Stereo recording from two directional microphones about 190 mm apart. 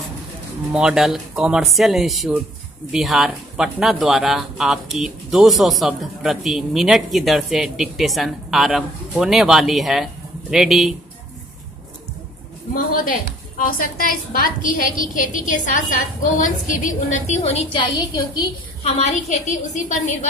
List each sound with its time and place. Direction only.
0.7 s speech: 5° right (ahead or behind)
12.7 s a woman's voice: 50° left (ahead or behind); by 17.8 s 35° left (ahead or behind)
17.9 s a woman's voice: 20° left (ahead or behind)
18.9 s a woman's voice: 35° left (ahead or behind)